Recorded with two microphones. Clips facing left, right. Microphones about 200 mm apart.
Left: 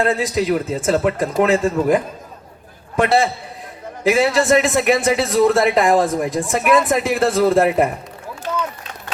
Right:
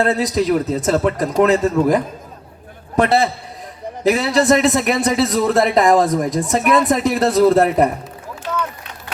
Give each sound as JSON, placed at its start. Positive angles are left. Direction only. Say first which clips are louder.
{"t": 0.0, "sound": "a man's voice", "louder": "right 1 dB", "side_deg": -40}